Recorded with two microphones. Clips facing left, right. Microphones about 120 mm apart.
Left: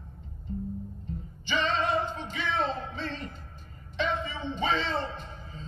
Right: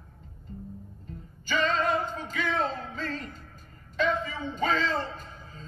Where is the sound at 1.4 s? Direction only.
45° right (ahead or behind).